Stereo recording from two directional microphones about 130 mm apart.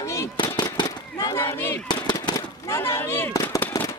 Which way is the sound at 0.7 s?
30° left (ahead or behind).